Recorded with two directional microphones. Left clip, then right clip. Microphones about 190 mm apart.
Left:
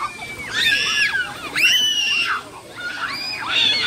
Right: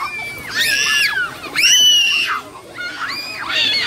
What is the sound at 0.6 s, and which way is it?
Screaming, 40° right (ahead or behind).